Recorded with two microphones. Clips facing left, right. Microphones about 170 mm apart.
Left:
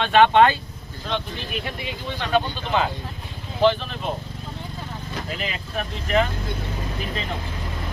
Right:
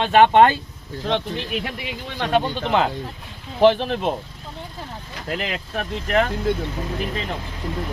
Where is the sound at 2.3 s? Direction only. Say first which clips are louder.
Right 2 dB; 65° right (ahead or behind).